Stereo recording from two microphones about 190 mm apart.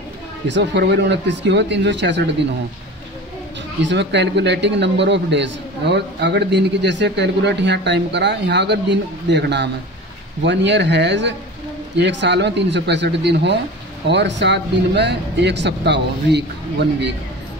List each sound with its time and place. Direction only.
0.5 s speech: 65° right (ahead or behind)
3.8 s a man's voice: 65° right (ahead or behind)